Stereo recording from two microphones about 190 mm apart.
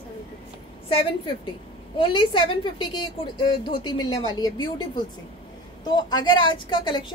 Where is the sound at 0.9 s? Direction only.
30° left (ahead or behind).